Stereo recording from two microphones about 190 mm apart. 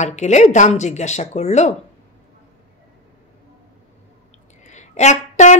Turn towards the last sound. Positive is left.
turn(degrees=40)  # may be behind; listen again after turning